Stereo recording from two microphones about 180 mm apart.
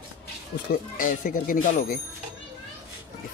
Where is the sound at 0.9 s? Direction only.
50° left (ahead or behind).